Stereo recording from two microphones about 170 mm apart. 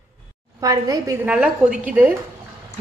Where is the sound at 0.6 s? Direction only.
20° right (ahead or behind).